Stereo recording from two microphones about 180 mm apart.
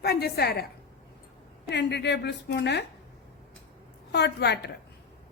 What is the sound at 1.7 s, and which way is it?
A woman's voice, 70° left (ahead or behind).